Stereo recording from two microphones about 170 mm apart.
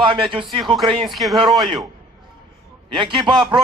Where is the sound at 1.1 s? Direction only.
Centre (ahead or behind).